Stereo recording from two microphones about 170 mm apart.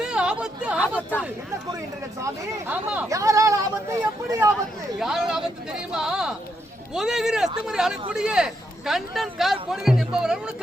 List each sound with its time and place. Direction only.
0.0 s chatter: 5° right (ahead or behind)
2.2 s speech: 10° right (ahead or behind)
4.9 s a man's voice: 5° right (ahead or behind)